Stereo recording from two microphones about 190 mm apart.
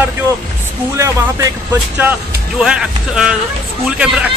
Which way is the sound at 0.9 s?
15° right (ahead or behind).